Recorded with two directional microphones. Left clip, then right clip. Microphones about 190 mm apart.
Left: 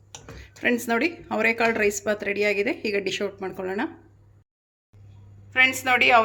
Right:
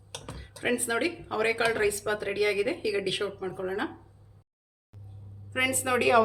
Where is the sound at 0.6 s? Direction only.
50° left (ahead or behind).